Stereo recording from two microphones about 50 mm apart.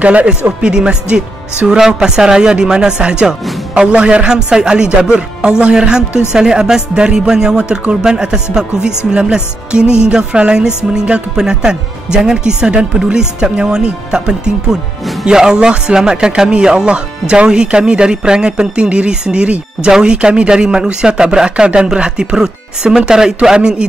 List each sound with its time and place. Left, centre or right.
0.0 s a man's voice: right